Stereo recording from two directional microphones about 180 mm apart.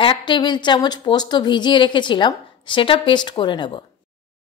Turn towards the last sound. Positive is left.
turn(degrees=25)  # may be behind; listen again after turning